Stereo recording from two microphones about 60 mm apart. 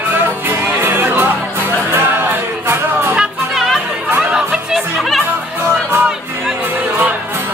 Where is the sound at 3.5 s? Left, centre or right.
Centre.